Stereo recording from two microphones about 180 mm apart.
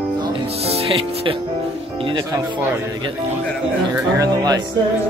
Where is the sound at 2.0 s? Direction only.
25° right (ahead or behind).